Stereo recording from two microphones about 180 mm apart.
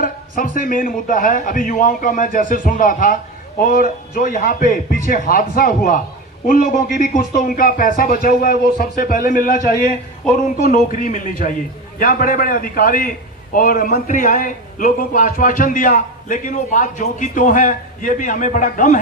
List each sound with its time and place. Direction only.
0.0 s a man's voice: 50° left (ahead or behind)